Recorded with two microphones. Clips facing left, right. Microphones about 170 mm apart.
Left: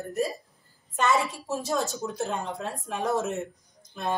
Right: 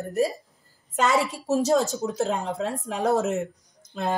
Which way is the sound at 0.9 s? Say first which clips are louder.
Right 2 dB; 85° right.